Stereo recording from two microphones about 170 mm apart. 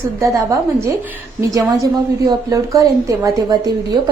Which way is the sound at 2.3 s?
20° right (ahead or behind).